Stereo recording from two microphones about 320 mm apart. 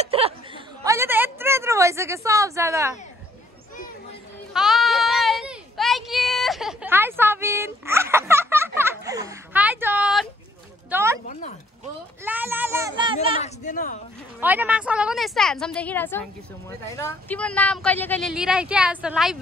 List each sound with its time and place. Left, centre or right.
0.0 s a sound: centre
0.8 s a woman's voice: centre
4.6 s sheep: centre
10.9 s speech: centre
12.3 s a child's voice: centre
13.4 s speech: left
14.4 s speech: centre